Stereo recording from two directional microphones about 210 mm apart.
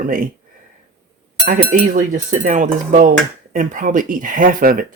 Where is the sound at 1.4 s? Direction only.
40° right (ahead or behind).